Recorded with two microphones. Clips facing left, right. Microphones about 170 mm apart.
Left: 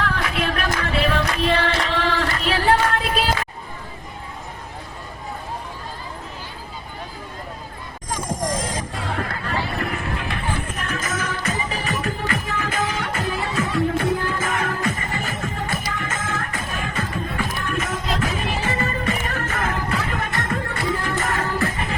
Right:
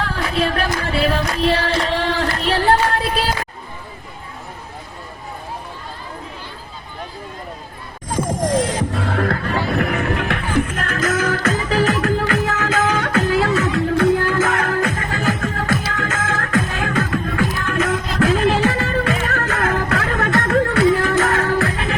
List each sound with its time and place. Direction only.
0.0 s a sound: 30° right (ahead or behind)
8.1 s music: 70° right (ahead or behind)
18.2 s music: 90° right